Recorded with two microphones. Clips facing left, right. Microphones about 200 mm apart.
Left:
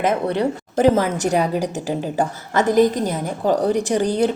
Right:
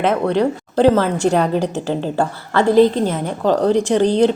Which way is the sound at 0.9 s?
10° left (ahead or behind).